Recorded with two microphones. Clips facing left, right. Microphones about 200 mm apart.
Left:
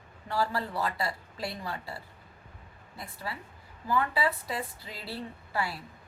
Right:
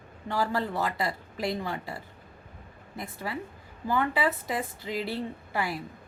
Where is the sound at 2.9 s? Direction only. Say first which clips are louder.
Right 5 dB; 20° right (ahead or behind).